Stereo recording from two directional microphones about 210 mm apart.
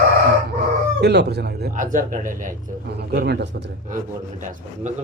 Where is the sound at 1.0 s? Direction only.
50° right (ahead or behind).